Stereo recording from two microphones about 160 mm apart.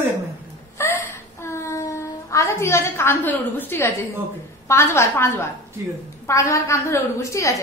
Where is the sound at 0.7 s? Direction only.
15° left (ahead or behind).